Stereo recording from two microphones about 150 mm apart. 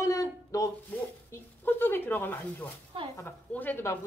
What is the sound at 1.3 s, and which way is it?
A woman's voice, 15° left (ahead or behind).